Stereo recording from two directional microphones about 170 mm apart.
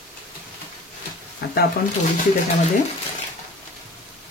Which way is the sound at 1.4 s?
70° left (ahead or behind).